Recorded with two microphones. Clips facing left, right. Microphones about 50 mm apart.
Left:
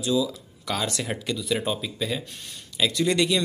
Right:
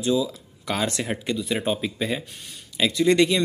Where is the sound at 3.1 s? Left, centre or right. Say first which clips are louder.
Right 6 dB; right.